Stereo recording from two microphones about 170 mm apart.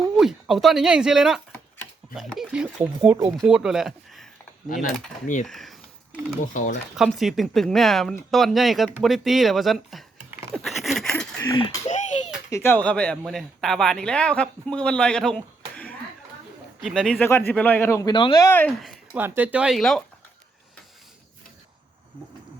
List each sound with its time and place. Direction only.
0.2 s speech: centre (ahead or behind)
5.5 s speech: centre (ahead or behind)
6.5 s speech: 50° left (ahead or behind)
6.9 s speech: centre (ahead or behind)
10.5 s a sound: centre (ahead or behind)
11.3 s speech: 25° left (ahead or behind)
18.4 s speech: 10° left (ahead or behind)
18.8 s a sound: centre (ahead or behind)
19.2 s speech: 10° right (ahead or behind)